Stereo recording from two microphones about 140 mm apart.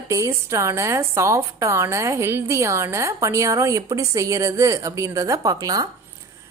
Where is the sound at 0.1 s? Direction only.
20° right (ahead or behind).